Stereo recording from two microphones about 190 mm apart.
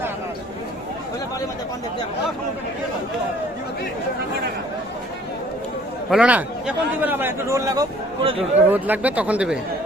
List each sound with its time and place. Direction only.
6.1 s speech: 5° right (ahead or behind)
8.2 s speech: 30° right (ahead or behind)
8.5 s speech: 10° right (ahead or behind)